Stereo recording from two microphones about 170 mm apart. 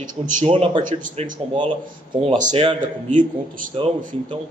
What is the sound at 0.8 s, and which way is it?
Speech, 50° right (ahead or behind).